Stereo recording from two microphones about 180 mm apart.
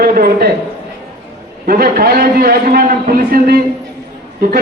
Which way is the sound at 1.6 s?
55° right (ahead or behind).